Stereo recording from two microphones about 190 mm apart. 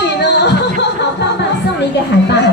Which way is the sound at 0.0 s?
65° left (ahead or behind).